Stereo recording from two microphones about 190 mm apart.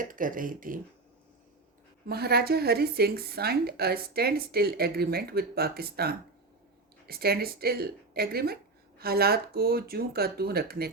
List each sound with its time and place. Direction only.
0.0 s speech: 45° right (ahead or behind)
2.0 s a woman's voice: 55° right (ahead or behind)